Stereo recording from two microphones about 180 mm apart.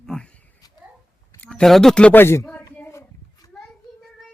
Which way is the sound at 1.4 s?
5° left (ahead or behind).